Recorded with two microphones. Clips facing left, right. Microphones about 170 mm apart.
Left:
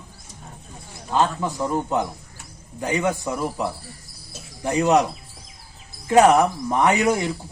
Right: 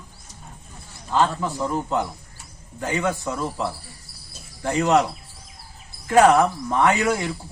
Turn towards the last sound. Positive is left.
turn(degrees=20)  # may be behind; listen again after turning